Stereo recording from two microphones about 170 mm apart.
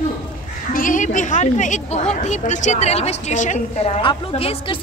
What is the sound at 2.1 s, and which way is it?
A woman's voice, 45° left (ahead or behind).